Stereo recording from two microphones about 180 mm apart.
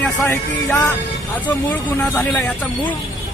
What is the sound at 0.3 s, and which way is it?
Speech, 15° left (ahead or behind).